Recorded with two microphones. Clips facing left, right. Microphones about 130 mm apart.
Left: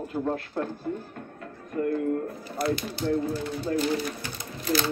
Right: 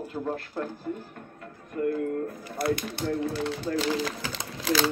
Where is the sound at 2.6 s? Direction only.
65° right (ahead or behind).